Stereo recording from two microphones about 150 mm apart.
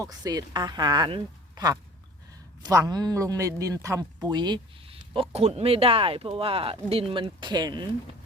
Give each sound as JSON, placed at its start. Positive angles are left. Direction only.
{"t": 0.0, "sound": "speech", "side_deg": -25}